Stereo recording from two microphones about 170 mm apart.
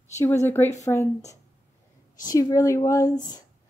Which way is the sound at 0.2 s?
15° left (ahead or behind).